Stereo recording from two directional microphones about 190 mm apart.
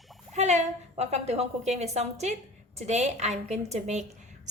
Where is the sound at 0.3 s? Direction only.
35° right (ahead or behind).